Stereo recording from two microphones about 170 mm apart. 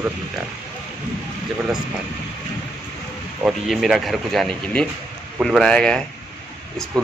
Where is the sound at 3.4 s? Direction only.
Centre (ahead or behind).